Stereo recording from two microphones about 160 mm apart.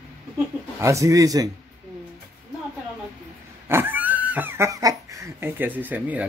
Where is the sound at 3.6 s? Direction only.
15° right (ahead or behind).